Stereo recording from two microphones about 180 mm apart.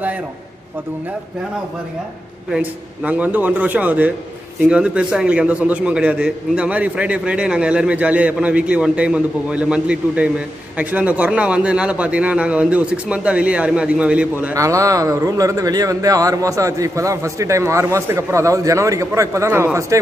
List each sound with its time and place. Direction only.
2.5 s a man's voice: 5° right (ahead or behind)